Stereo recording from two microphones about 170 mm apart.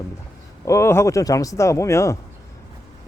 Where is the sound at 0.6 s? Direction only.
15° left (ahead or behind).